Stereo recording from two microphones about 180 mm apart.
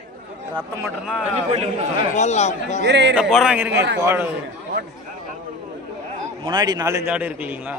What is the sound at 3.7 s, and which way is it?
Speech, 70° right (ahead or behind).